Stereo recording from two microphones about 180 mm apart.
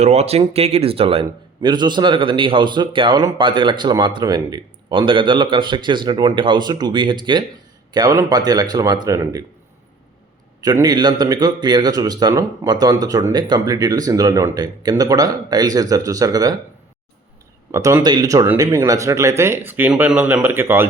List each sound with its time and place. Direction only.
0.0 s speech: 35° right (ahead or behind); by 9.4 s 20° right (ahead or behind)
10.6 s speech: 20° right (ahead or behind)
17.7 s speech: 15° right (ahead or behind)